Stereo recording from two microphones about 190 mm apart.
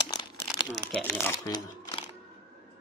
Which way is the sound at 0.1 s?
20° left (ahead or behind).